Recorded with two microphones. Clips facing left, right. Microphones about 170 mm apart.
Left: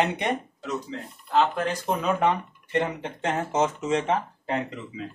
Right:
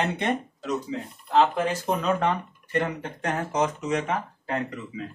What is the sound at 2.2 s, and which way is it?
Speech, 20° left (ahead or behind).